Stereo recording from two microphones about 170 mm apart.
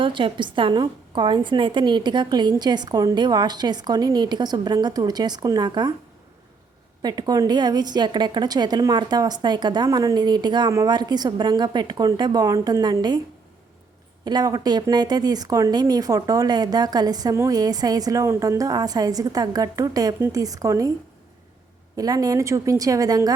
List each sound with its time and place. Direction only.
0.0 s speech: 30° right (ahead or behind)
7.0 s speech: 25° right (ahead or behind)
14.3 s speech: 25° right (ahead or behind)
21.9 s speech: 20° right (ahead or behind)